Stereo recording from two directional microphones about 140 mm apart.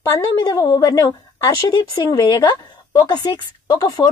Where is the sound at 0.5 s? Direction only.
25° left (ahead or behind).